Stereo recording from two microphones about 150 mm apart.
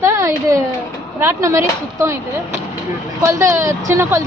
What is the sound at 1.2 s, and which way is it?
Speech, 20° right (ahead or behind).